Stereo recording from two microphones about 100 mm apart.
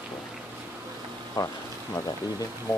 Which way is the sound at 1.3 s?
35° left (ahead or behind).